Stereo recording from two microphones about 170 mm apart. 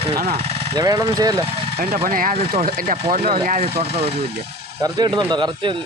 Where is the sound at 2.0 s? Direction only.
55° right (ahead or behind).